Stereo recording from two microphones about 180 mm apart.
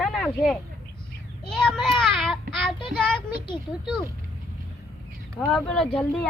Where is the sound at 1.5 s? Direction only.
5° left (ahead or behind).